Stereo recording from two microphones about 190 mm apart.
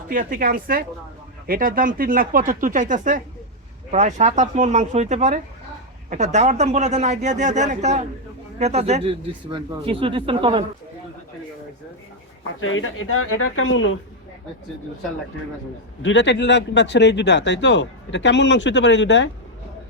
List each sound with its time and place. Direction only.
0.1 s a man's voice: 45° right (ahead or behind); by 10.6 s 25° right (ahead or behind)
12.5 s speech: 90° left
16.0 s speech: 70° left (ahead or behind)